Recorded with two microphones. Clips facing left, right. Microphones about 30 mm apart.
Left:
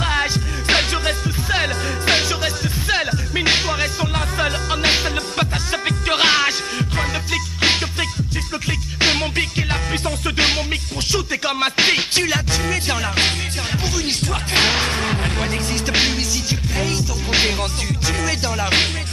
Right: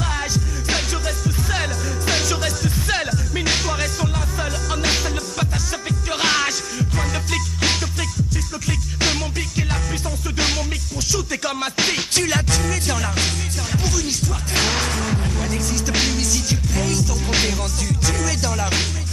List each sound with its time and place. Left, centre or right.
0.0 s music: left
4.1 s music: left
6.2 s music: left
7.6 s music: left
16.0 s music: left